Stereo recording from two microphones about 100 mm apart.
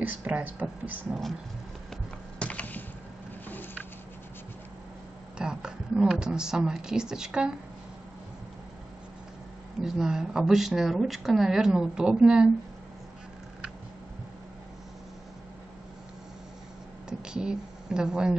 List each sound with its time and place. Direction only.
0.0 s speech: 15° right (ahead or behind)
2.3 s computer keyboard: 15° left (ahead or behind)
5.4 s a woman's voice: 10° right (ahead or behind)
9.8 s speech: 5° right (ahead or behind)
17.2 s a sound: 10° right (ahead or behind)